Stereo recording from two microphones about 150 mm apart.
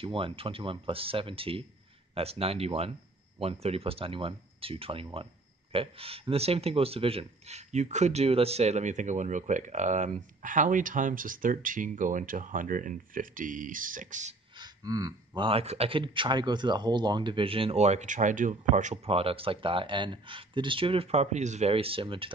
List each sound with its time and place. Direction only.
0.0 s speech: 35° right (ahead or behind); by 14.3 s 60° right (ahead or behind)
14.5 s speech: 25° right (ahead or behind)